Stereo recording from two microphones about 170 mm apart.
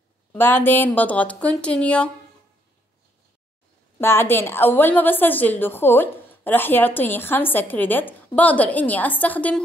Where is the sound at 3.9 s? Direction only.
15° left (ahead or behind).